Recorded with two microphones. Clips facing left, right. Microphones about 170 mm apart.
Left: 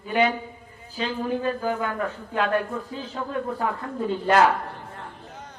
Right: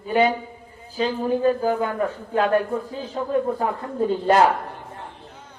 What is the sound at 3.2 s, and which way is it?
Speech, 30° right (ahead or behind).